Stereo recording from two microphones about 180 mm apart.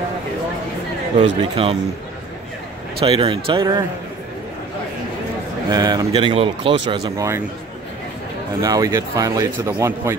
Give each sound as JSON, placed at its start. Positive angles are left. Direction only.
{"t": 1.2, "sound": "speech", "side_deg": -30}
{"t": 3.0, "sound": "speech", "side_deg": -30}
{"t": 5.7, "sound": "speech", "side_deg": -25}
{"t": 7.2, "sound": "a man's voice", "side_deg": -15}
{"t": 8.5, "sound": "a man's voice", "side_deg": -15}